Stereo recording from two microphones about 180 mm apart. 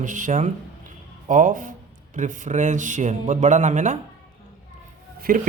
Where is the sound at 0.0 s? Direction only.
45° right (ahead or behind).